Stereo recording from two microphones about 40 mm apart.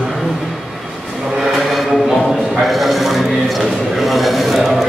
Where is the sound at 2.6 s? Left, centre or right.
Centre.